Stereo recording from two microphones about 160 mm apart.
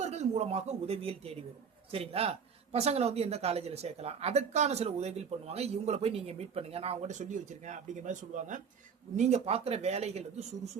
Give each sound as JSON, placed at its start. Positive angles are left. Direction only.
{"t": 0.0, "sound": "speech", "side_deg": -45}